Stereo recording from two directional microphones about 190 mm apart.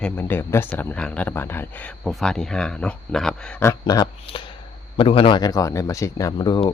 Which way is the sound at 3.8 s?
20° left (ahead or behind).